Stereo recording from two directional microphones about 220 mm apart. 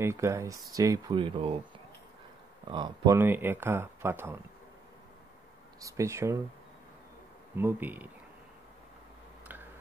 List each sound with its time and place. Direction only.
0.0 s speech: 10° right (ahead or behind)
2.7 s speech: 20° right (ahead or behind)
5.8 s speech: 15° right (ahead or behind)
7.5 s speech: 10° right (ahead or behind)